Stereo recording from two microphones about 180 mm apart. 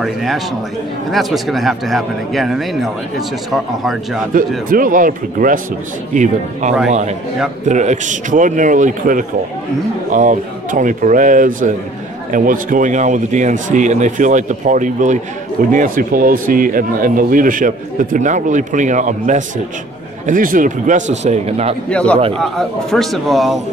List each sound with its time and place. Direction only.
0.0 s speech: centre (ahead or behind)
4.6 s a man's voice: 50° right (ahead or behind)
21.8 s a man's voice: 5° left (ahead or behind)